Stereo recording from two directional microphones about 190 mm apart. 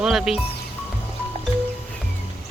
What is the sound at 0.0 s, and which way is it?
Speech, centre (ahead or behind).